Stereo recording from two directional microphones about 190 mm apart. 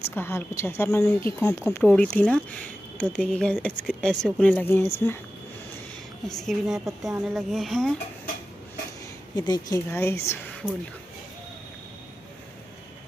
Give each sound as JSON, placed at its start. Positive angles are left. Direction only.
{"t": 0.1, "sound": "speech", "side_deg": 10}
{"t": 6.2, "sound": "speech", "side_deg": 0}
{"t": 9.3, "sound": "a woman's voice", "side_deg": 20}